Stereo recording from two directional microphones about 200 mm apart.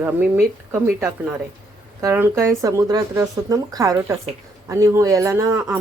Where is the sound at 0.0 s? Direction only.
10° right (ahead or behind).